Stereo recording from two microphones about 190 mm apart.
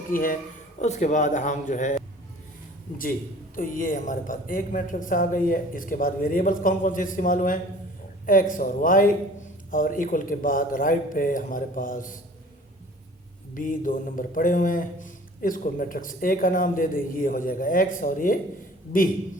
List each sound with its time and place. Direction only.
0.1 s a man's voice: 50° left (ahead or behind)
3.0 s speech: 45° left (ahead or behind)
13.5 s speech: 45° left (ahead or behind)